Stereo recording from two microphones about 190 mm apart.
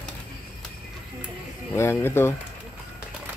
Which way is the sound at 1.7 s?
15° left (ahead or behind).